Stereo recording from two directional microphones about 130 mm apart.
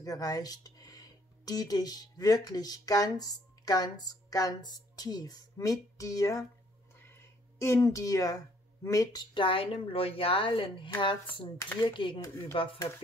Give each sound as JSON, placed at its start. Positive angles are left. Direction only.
{"t": 0.0, "sound": "speech", "side_deg": 30}
{"t": 7.0, "sound": "a sound", "side_deg": 20}
{"t": 8.8, "sound": "speech", "side_deg": 25}
{"t": 9.3, "sound": "a woman's voice", "side_deg": 40}
{"t": 12.2, "sound": "speech", "side_deg": 20}